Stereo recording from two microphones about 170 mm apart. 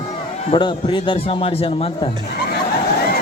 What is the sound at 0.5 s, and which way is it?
A woman's voice, 30° left (ahead or behind).